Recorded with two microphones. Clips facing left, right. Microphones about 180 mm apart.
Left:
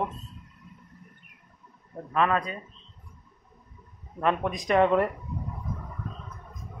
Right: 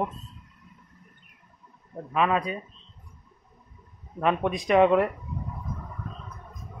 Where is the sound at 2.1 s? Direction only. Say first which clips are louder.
Right 1 dB; 10° right (ahead or behind).